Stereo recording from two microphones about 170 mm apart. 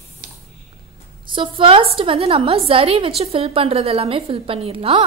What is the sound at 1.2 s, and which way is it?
A woman's voice, 30° right (ahead or behind).